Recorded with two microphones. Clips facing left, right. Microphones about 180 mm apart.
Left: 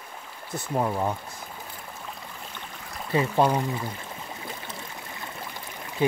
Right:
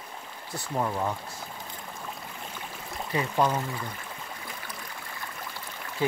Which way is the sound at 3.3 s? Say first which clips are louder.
Left 2 dB; 15° left (ahead or behind).